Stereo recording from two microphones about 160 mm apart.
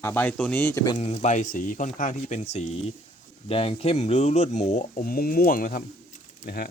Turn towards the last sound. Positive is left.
turn(degrees=65)  # may be behind; listen again after turning